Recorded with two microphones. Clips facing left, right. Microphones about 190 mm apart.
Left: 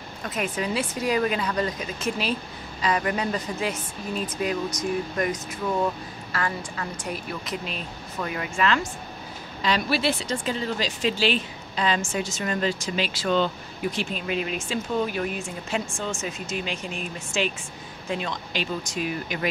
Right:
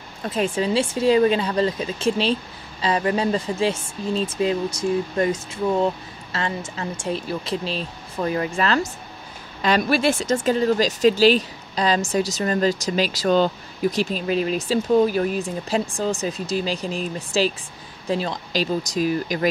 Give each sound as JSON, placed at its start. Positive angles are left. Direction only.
{"t": 0.2, "sound": "speech", "side_deg": -30}
{"t": 9.6, "sound": "speech", "side_deg": -50}